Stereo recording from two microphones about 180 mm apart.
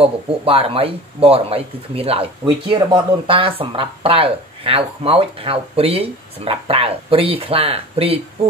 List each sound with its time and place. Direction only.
0.0 s speech: 30° right (ahead or behind)